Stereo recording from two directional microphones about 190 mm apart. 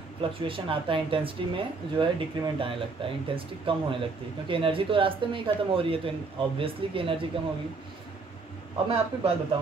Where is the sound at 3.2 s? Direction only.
30° right (ahead or behind).